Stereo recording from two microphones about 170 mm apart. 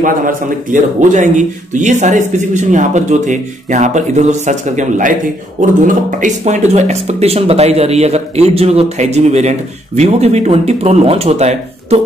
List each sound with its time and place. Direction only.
0.0 s a man's voice: 50° right (ahead or behind)